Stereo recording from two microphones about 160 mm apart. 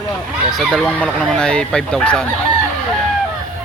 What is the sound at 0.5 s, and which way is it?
Speech, centre (ahead or behind).